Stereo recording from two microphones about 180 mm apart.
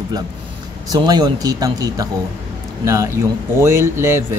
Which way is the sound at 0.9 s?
25° right (ahead or behind).